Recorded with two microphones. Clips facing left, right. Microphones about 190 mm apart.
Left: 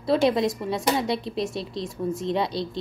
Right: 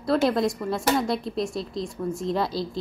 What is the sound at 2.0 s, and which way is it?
Speech, 10° left (ahead or behind).